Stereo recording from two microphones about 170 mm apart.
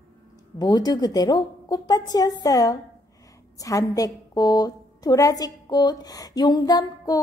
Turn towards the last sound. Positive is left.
turn(degrees=25)  # may be behind; listen again after turning